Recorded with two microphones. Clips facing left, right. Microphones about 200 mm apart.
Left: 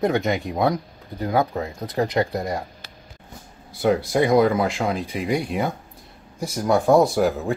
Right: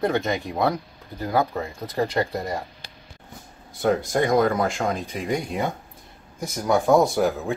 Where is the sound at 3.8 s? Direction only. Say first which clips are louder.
Left 2 dB; 5° left (ahead or behind).